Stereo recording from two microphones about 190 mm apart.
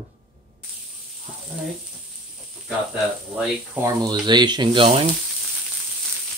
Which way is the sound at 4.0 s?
20° right (ahead or behind).